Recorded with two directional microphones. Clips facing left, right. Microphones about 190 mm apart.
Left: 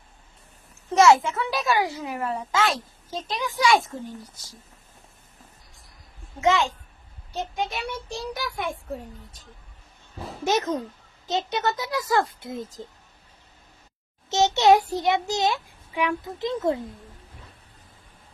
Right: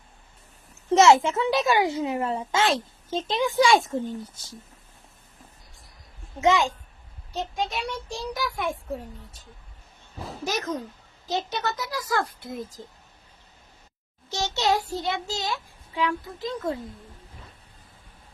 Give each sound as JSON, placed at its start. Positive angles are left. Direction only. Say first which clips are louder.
{"t": 0.9, "sound": "speech", "louder": "even", "side_deg": -25}
{"t": 6.4, "sound": "a woman's voice", "louder": "right 1 dB", "side_deg": -15}
{"t": 7.3, "sound": "a child's voice", "louder": "even", "side_deg": 0}
{"t": 10.4, "sound": "a child's voice", "louder": "left 5 dB", "side_deg": 25}
{"t": 14.3, "sound": "a child's voice", "louder": "left 7 dB", "side_deg": 20}